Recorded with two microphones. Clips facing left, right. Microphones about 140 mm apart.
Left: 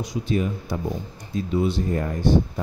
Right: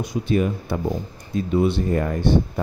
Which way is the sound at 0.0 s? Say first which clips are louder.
Right 3 dB; 55° right (ahead or behind).